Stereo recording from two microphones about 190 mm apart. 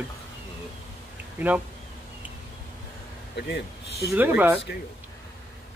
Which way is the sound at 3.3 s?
60° left (ahead or behind).